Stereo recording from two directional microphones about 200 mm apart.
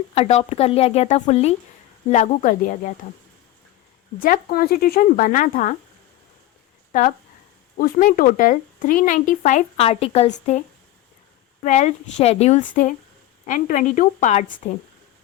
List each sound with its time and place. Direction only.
0.1 s speech: 30° left (ahead or behind)
4.2 s speech: 45° left (ahead or behind)
7.8 s speech: 40° left (ahead or behind)
11.6 s speech: 35° left (ahead or behind)